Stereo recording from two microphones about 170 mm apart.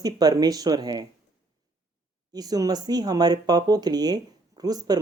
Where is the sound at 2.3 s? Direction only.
20° right (ahead or behind).